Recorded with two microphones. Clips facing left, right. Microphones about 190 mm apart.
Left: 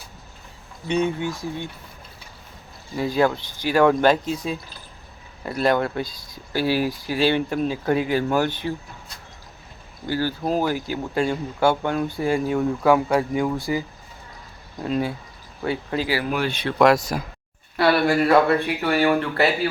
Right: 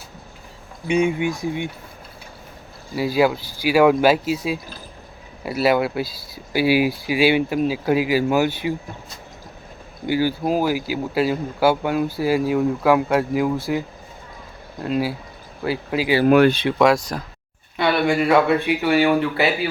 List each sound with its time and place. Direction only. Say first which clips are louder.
0.9 s speech: right 3 dB; 10° right (ahead or behind)
2.9 s speech: right 2 dB; 10° right (ahead or behind)
16.2 s speech: right 11 dB; 60° right (ahead or behind)
16.7 s speech: even; centre (ahead or behind)